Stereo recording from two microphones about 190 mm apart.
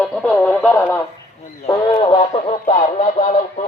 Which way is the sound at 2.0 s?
30° left (ahead or behind).